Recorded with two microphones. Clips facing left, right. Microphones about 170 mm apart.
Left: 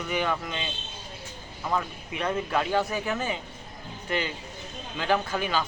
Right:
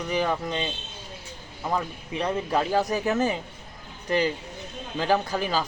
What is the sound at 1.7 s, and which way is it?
Speech, 30° right (ahead or behind).